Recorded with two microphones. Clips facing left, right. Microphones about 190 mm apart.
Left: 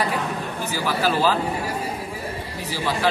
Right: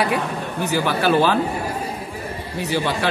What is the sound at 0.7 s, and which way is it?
Speech, 65° right (ahead or behind).